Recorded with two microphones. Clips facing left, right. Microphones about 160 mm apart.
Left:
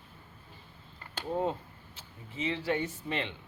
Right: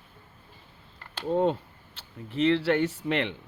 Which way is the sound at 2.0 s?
75° right (ahead or behind).